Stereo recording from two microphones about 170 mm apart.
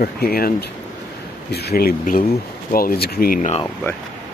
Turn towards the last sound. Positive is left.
turn(degrees=45)  # may be behind; listen again after turning